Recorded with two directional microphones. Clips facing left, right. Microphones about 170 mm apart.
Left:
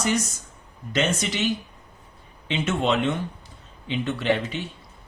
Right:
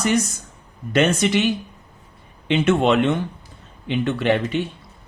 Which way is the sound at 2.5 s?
65° right (ahead or behind).